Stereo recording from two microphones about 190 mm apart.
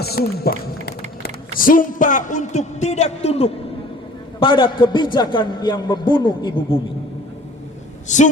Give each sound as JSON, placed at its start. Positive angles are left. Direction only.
{"t": 0.0, "sound": "a sound", "side_deg": 55}
{"t": 1.5, "sound": "a man's voice", "side_deg": 45}
{"t": 8.0, "sound": "a man's voice", "side_deg": 40}